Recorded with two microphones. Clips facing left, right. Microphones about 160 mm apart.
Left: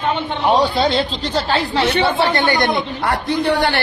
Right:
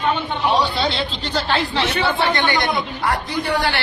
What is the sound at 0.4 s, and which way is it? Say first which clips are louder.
A man's voice: left 4 dB; 50° left (ahead or behind).